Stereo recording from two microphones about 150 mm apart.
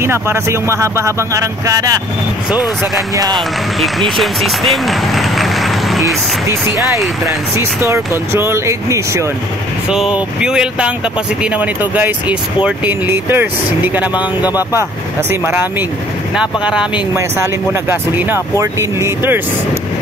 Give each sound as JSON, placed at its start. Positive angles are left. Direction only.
{"t": 0.0, "sound": "speech", "side_deg": -15}
{"t": 3.3, "sound": "speech", "side_deg": 0}
{"t": 7.5, "sound": "speech", "side_deg": -20}
{"t": 9.8, "sound": "speech", "side_deg": -5}
{"t": 14.1, "sound": "speech", "side_deg": 25}
{"t": 14.7, "sound": "speech", "side_deg": -15}